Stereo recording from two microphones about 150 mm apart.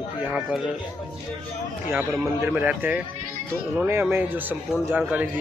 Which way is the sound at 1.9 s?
15° right (ahead or behind).